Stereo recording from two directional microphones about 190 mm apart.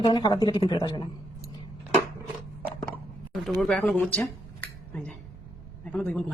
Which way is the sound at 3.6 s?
5° left (ahead or behind).